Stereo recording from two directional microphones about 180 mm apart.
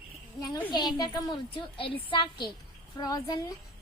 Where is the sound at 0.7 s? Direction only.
25° left (ahead or behind).